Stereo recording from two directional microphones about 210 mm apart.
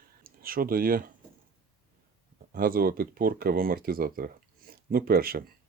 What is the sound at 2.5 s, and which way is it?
Speech, 45° right (ahead or behind).